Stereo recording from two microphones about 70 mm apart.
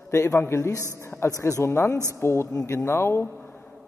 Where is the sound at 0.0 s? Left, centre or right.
Left.